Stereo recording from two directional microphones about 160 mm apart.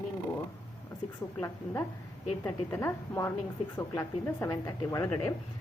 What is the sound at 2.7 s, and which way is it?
A woman's voice, 15° left (ahead or behind).